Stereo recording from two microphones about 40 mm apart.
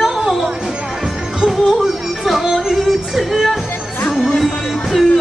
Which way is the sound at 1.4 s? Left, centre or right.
Centre.